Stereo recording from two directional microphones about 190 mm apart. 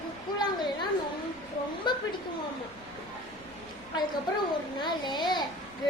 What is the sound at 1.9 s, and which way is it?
Speech, 25° left (ahead or behind).